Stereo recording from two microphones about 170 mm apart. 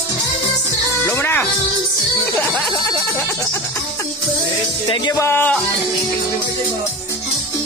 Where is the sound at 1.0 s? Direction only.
10° left (ahead or behind).